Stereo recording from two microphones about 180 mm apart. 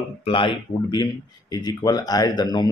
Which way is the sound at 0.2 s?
30° left (ahead or behind).